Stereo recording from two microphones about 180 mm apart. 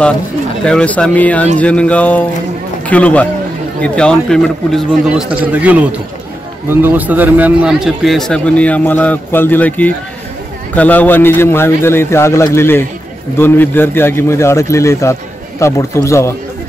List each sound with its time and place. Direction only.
0.7 s a man's voice: 5° left (ahead or behind)